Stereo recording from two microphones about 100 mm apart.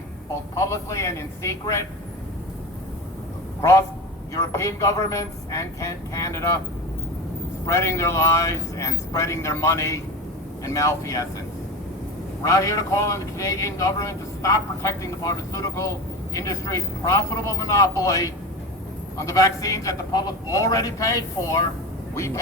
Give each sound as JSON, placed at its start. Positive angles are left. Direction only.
{"t": 0.7, "sound": "a man's voice", "side_deg": 30}
{"t": 3.6, "sound": "a man's voice", "side_deg": 30}
{"t": 7.7, "sound": "a man's voice", "side_deg": 30}
{"t": 12.4, "sound": "a man's voice", "side_deg": 35}